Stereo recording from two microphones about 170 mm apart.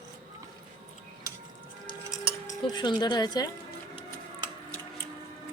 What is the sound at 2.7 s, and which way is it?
Speech, 25° left (ahead or behind).